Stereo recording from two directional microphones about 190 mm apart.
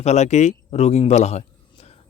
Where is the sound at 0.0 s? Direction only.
35° left (ahead or behind).